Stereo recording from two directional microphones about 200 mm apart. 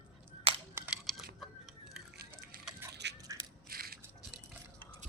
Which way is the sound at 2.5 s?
45° right (ahead or behind).